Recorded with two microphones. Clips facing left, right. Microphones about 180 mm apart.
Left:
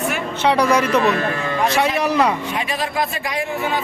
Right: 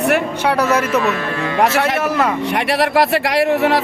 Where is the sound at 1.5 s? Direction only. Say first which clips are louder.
Right 6 dB; 70° right (ahead or behind).